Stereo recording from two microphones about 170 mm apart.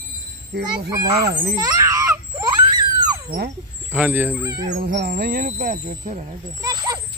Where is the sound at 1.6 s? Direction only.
20° right (ahead or behind).